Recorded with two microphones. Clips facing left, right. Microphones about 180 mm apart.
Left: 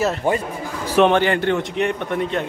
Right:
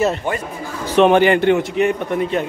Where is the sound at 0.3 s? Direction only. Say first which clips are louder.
Left 3 dB; 35° left (ahead or behind).